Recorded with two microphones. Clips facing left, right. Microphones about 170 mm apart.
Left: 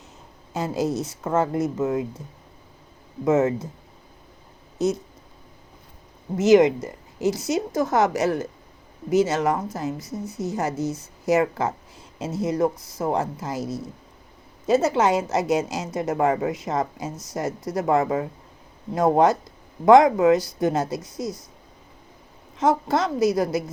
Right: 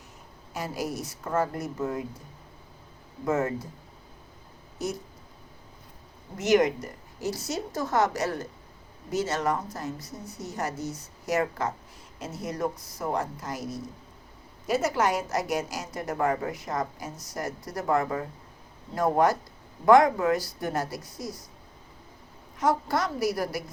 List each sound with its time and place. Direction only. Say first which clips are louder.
0.5 s a woman's voice: left 8 dB; 25° left (ahead or behind)
3.2 s a woman's voice: left 7 dB; 20° left (ahead or behind)
4.8 s a woman's voice: left 9 dB; 20° left (ahead or behind)
6.3 s a woman's voice: left 7 dB; 25° left (ahead or behind)
22.5 s a woman's voice: left 5 dB; 25° left (ahead or behind)